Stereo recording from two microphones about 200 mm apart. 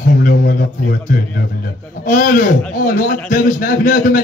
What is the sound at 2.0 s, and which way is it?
A man's voice, 45° left (ahead or behind).